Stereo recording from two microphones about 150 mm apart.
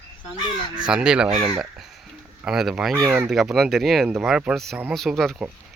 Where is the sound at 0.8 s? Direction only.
5° right (ahead or behind).